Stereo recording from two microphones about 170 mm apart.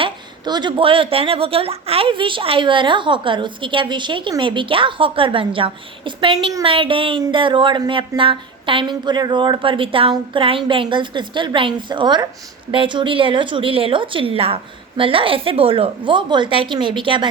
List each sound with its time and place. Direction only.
0.0 s a woman's voice: 25° right (ahead or behind)